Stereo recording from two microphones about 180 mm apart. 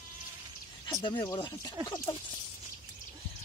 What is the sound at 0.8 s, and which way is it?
Speech, 25° left (ahead or behind).